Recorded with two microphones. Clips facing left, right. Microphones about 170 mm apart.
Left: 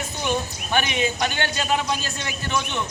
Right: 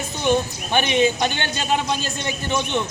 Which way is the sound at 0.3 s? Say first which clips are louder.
Right 6 dB; 25° right (ahead or behind).